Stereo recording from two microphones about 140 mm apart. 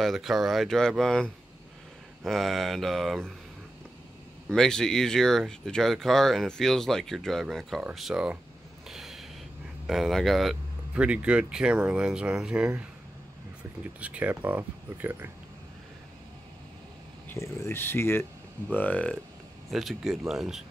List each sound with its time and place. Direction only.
0.0 s speech: centre (ahead or behind)
4.5 s speech: 5° left (ahead or behind)
8.8 s a sound: centre (ahead or behind)
9.8 s speech: centre (ahead or behind)
13.9 s speech: 10° right (ahead or behind)
17.3 s speech: 20° left (ahead or behind)
19.7 s speech: centre (ahead or behind)